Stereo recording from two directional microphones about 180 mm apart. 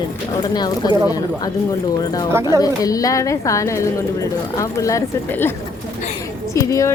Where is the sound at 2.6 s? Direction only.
20° left (ahead or behind).